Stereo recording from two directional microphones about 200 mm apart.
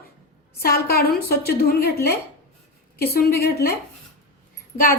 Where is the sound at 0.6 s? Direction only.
50° left (ahead or behind).